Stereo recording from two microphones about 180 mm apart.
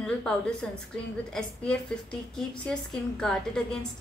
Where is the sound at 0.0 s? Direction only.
5° left (ahead or behind).